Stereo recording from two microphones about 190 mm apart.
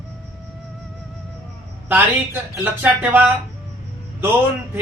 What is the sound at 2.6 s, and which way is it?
Speech, 10° right (ahead or behind).